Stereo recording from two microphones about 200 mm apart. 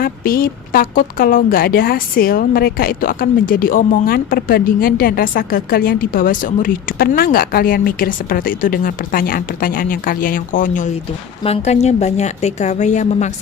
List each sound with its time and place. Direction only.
0.0 s a woman's voice: 45° left (ahead or behind)